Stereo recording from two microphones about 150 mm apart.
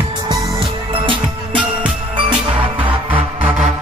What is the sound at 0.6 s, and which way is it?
Music, 35° right (ahead or behind).